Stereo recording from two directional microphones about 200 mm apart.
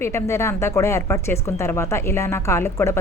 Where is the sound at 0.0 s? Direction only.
15° left (ahead or behind).